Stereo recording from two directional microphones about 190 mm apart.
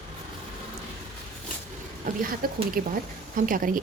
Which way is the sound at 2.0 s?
50° right (ahead or behind).